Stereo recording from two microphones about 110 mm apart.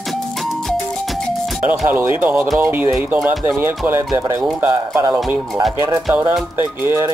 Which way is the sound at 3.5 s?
20° right (ahead or behind).